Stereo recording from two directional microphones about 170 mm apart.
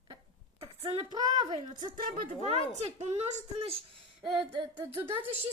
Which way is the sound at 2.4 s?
40° right (ahead or behind).